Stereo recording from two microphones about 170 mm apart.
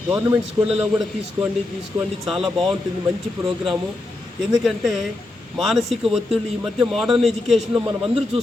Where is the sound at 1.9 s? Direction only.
Centre (ahead or behind).